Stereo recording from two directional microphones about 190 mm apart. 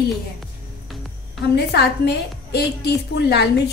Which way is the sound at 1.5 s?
60° left (ahead or behind).